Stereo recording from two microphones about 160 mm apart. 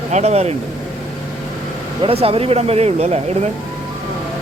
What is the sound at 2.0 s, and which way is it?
Speech, 35° right (ahead or behind).